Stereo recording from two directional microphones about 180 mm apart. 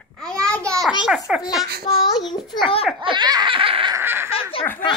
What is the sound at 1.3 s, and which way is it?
Babbling, 5° right (ahead or behind).